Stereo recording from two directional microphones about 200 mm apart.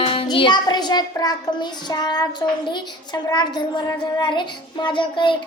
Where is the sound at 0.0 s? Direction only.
25° left (ahead or behind).